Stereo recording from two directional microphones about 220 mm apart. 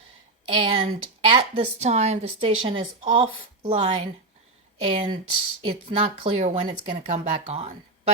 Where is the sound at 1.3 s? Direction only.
25° right (ahead or behind).